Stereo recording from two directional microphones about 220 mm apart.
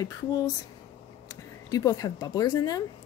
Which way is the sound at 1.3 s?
15° left (ahead or behind).